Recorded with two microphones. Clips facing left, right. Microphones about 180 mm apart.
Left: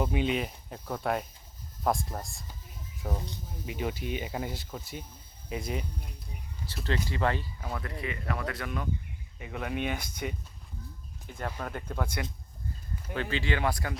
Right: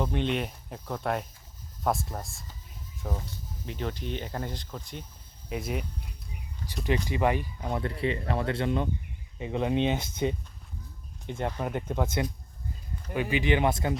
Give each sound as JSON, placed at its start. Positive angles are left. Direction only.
{"t": 0.0, "sound": "speech", "side_deg": 5}
{"t": 3.0, "sound": "speech", "side_deg": 10}
{"t": 6.7, "sound": "speech", "side_deg": -15}
{"t": 8.0, "sound": "speech", "side_deg": -30}